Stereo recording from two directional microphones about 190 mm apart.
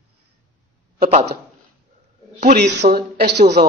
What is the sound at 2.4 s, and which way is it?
Speech, 55° right (ahead or behind).